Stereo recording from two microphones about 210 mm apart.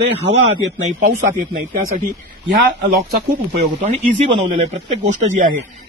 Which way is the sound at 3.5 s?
30° right (ahead or behind).